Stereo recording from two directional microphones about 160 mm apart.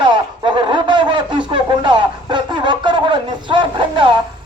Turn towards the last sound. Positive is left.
turn(degrees=-30)  # may be behind; listen again after turning